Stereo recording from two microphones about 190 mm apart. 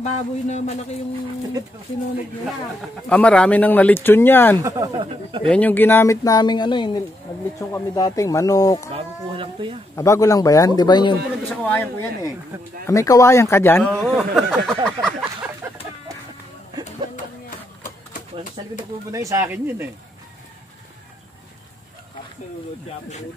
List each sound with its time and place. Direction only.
0.0 s a man's voice: 35° left (ahead or behind)
3.1 s speech: 5° left (ahead or behind)
4.6 s speech: 15° right (ahead or behind)
5.5 s speech: 10° left (ahead or behind)
8.9 s speech: 30° right (ahead or behind)
9.9 s speech: 15° left (ahead or behind)
11.4 s speech: 10° left (ahead or behind)
13.9 s speech: centre (ahead or behind)
14.7 s a sound: 5° left (ahead or behind)
16.8 s a sound: 40° left (ahead or behind)
18.6 s speech: 25° right (ahead or behind)